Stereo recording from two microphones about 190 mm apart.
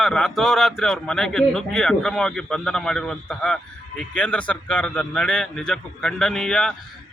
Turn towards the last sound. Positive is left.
turn(degrees=5)  # may be behind; listen again after turning